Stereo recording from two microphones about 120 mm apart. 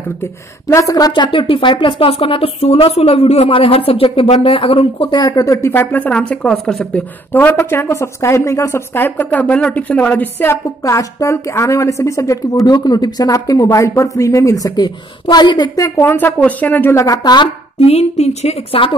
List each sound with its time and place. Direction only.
0.7 s speech: 25° left (ahead or behind); by 5.1 s 50° left (ahead or behind)
5.1 s a woman's voice: 30° left (ahead or behind); by 10.6 s 15° left (ahead or behind)
10.8 s a woman's voice: 25° left (ahead or behind)
17.7 s a woman's voice: 60° left (ahead or behind)